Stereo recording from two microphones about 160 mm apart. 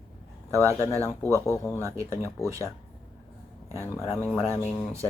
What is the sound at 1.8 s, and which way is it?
Speech, 20° right (ahead or behind).